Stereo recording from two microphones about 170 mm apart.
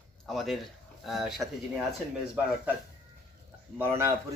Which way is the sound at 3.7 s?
15° right (ahead or behind).